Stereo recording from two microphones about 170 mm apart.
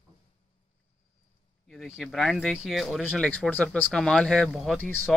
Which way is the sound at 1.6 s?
Centre (ahead or behind).